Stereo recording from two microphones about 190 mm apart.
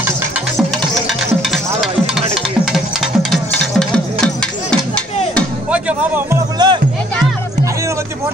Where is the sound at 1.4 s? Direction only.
Centre (ahead or behind).